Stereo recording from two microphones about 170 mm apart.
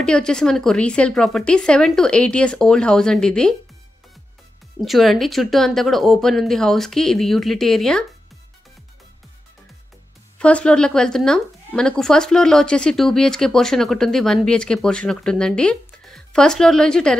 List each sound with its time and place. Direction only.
0.0 s speech: 5° left (ahead or behind)
4.7 s speech: centre (ahead or behind)
10.4 s speech: 5° left (ahead or behind)